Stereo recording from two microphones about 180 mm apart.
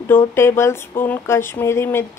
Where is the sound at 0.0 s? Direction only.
10° left (ahead or behind).